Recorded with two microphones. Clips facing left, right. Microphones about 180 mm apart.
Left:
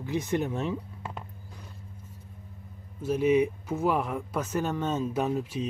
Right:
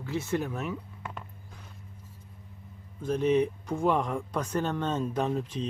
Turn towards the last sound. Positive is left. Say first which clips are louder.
# left 1 dB
turn(degrees=10)  # may be behind; listen again after turning